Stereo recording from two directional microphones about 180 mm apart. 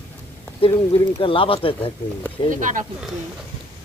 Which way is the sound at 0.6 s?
30° left (ahead or behind).